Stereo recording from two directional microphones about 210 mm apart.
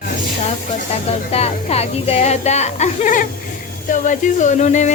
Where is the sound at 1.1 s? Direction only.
30° left (ahead or behind).